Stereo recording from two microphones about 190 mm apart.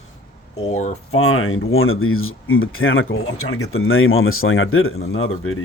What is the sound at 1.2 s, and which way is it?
Speech, 90° left.